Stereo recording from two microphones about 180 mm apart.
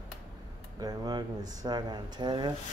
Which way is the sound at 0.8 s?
20° right (ahead or behind).